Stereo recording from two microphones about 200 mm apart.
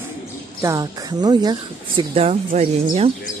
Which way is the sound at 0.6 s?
15° right (ahead or behind).